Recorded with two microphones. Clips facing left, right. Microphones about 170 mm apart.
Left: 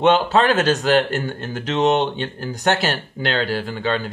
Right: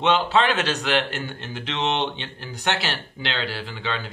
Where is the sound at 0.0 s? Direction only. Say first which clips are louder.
Left 4 dB; 45° left (ahead or behind).